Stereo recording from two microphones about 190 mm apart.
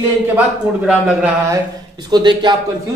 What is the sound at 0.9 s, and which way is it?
Speech, 5° right (ahead or behind).